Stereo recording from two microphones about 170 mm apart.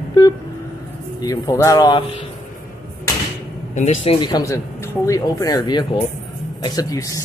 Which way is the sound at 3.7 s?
40° left (ahead or behind).